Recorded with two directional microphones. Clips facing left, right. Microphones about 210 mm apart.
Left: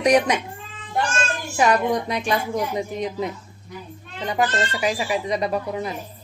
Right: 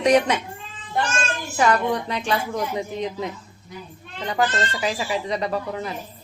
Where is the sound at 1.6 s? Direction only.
10° left (ahead or behind).